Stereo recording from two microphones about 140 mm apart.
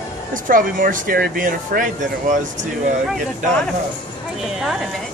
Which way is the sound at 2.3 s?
60° right (ahead or behind).